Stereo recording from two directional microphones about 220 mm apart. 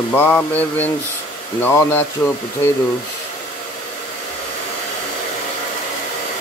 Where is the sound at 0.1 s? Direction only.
10° left (ahead or behind).